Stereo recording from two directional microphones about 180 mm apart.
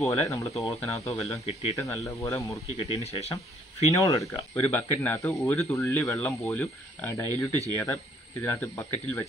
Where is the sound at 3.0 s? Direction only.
35° left (ahead or behind).